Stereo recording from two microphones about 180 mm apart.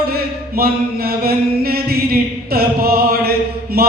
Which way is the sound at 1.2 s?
55° right (ahead or behind).